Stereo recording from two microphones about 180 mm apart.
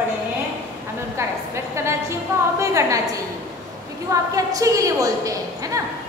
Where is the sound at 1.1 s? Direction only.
15° right (ahead or behind).